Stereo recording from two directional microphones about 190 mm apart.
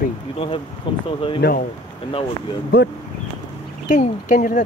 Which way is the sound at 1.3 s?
55° left (ahead or behind).